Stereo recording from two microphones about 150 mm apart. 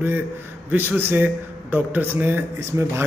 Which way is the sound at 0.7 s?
10° right (ahead or behind).